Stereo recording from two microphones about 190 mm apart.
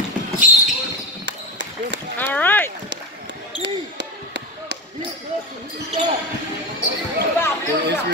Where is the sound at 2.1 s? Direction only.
10° left (ahead or behind).